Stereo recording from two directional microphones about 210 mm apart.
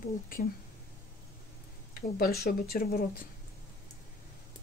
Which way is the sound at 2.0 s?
45° left (ahead or behind).